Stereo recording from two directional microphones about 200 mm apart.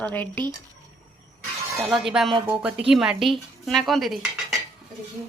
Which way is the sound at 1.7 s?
Centre (ahead or behind).